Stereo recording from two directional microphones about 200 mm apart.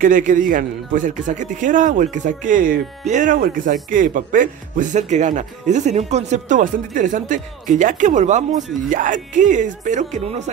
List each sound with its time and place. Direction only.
0.0 s a man's voice: 40° right (ahead or behind)